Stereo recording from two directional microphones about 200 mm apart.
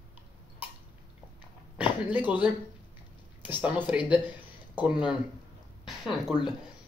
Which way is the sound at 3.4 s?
10° right (ahead or behind).